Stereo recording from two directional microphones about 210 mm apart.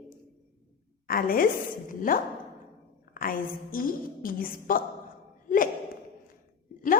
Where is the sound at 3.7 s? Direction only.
40° left (ahead or behind).